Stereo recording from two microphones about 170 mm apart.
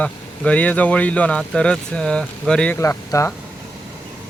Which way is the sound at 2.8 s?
15° left (ahead or behind).